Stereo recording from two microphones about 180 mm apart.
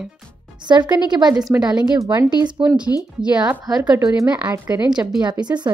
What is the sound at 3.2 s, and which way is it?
Speech, 5° right (ahead or behind).